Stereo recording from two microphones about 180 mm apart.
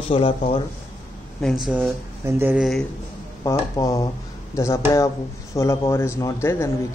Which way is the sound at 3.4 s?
15° left (ahead or behind).